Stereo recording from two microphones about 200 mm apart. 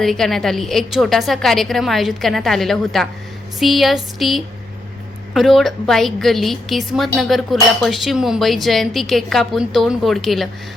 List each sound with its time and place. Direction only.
0.0 s a woman's voice: centre (ahead or behind)